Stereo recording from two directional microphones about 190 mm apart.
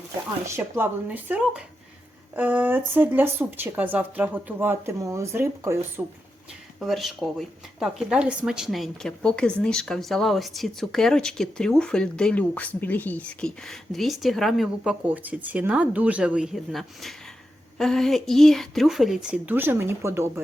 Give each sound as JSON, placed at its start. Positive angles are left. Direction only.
{"t": 0.4, "sound": "speech", "side_deg": -10}
{"t": 6.7, "sound": "speech", "side_deg": 0}